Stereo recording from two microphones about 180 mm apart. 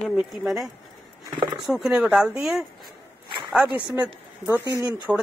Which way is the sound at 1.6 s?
Centre (ahead or behind).